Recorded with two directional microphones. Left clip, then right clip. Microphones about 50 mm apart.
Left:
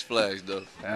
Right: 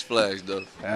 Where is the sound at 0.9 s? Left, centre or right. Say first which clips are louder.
Right 3 dB; right.